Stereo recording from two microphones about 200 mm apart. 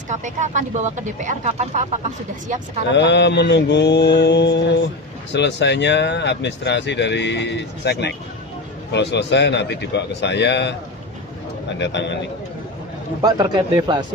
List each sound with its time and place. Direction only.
0.1 s speech: 35° right (ahead or behind)
2.9 s speech: 60° left (ahead or behind)
11.8 s speech: 60° left (ahead or behind)
13.2 s a man's voice: 20° right (ahead or behind)